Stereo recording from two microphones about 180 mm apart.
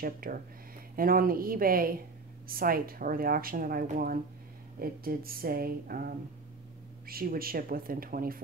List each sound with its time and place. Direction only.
0.0 s speech: 50° right (ahead or behind)